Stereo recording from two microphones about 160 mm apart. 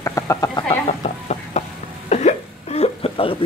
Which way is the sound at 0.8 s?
45° left (ahead or behind).